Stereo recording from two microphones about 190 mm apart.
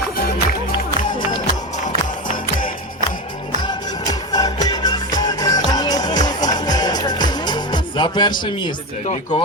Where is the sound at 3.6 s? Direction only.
20° left (ahead or behind).